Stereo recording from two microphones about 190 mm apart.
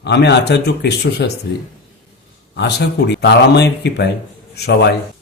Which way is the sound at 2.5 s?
60° left (ahead or behind).